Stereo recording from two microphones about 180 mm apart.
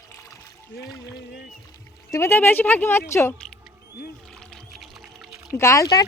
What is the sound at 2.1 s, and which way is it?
Speech, 15° left (ahead or behind).